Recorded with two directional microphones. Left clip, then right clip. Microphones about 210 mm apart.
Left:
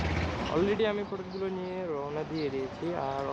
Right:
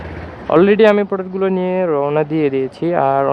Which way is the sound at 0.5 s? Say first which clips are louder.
Right 19 dB; 50° right (ahead or behind).